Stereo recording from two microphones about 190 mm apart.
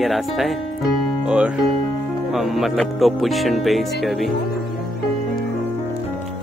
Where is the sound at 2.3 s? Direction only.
Centre (ahead or behind).